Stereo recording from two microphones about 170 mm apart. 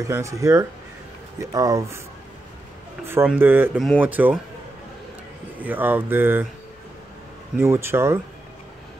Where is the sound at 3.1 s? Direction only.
10° right (ahead or behind).